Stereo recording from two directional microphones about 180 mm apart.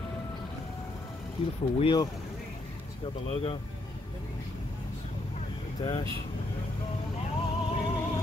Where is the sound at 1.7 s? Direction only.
25° left (ahead or behind).